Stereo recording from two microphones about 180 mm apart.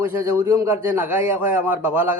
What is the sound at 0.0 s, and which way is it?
A man's voice, 15° right (ahead or behind).